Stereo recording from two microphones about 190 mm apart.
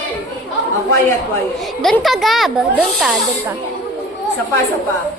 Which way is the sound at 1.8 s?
Centre (ahead or behind).